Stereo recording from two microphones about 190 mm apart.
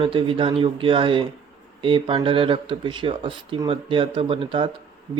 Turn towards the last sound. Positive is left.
turn(degrees=-25)  # may be behind; listen again after turning